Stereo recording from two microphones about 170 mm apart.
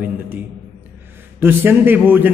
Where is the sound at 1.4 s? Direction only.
10° right (ahead or behind).